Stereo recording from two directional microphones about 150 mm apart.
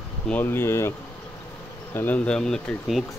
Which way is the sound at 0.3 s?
15° left (ahead or behind).